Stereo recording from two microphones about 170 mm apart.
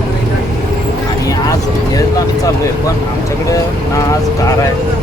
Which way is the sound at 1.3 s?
20° left (ahead or behind).